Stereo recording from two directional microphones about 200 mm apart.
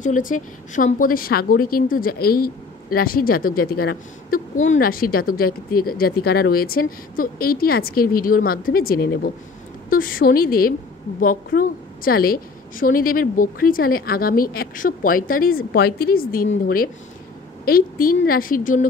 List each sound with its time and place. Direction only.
0.0 s a woman's voice: 40° left (ahead or behind)